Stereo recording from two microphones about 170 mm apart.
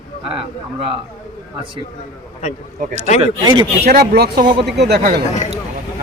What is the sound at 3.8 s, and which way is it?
Speech, 70° right (ahead or behind).